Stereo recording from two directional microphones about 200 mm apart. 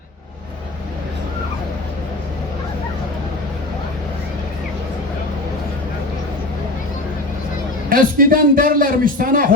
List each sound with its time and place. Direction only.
7.9 s a man's voice: 45° right (ahead or behind)